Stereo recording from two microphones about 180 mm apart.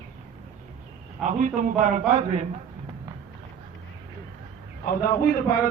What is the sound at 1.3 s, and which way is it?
A man's voice, 45° right (ahead or behind).